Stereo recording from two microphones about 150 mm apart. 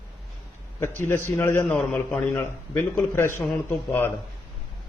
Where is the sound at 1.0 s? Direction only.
15° left (ahead or behind).